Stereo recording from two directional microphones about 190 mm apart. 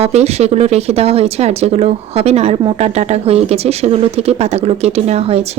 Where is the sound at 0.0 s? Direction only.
35° right (ahead or behind).